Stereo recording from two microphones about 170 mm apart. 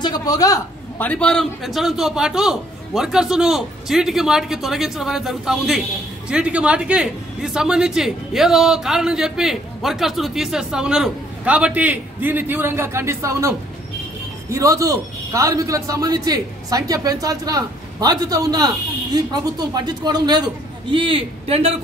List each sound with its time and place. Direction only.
0.0 s a sound: 25° left (ahead or behind)
1.0 s a man's voice: 5° left (ahead or behind); by 18.7 s 20° right (ahead or behind)
19.7 s a man's voice: 25° right (ahead or behind)